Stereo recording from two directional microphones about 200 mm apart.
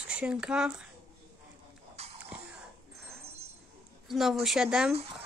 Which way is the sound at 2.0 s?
30° right (ahead or behind).